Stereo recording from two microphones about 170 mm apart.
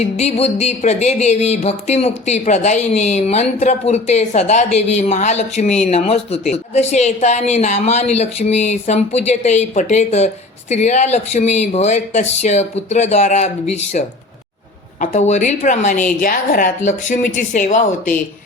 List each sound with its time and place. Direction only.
0.0 s speech: 40° left (ahead or behind)
15.0 s a woman's voice: 50° left (ahead or behind)